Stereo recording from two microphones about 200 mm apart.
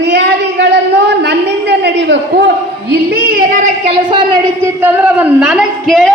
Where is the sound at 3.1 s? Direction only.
45° right (ahead or behind).